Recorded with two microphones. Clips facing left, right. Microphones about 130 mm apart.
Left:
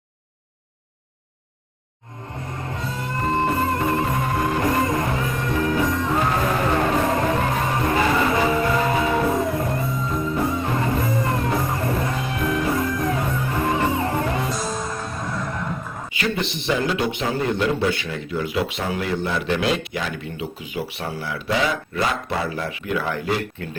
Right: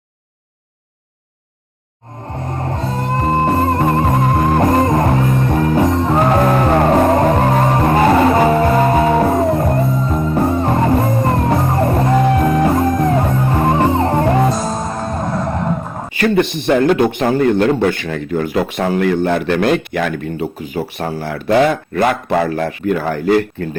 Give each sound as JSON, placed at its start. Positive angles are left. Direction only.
{"t": 2.6, "sound": "music", "side_deg": -45}
{"t": 16.1, "sound": "a man's voice", "side_deg": -55}